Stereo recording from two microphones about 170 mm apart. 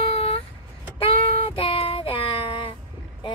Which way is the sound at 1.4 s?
35° left (ahead or behind).